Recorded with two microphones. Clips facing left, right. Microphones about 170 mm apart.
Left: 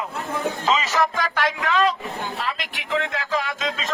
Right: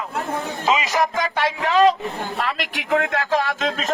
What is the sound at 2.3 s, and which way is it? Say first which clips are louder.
Speech: right 4 dB; 55° right (ahead or behind).